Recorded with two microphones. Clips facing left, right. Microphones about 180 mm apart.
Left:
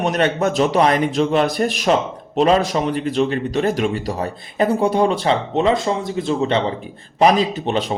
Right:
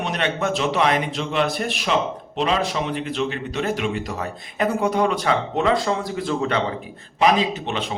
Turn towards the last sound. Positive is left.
turn(degrees=40)  # may be behind; listen again after turning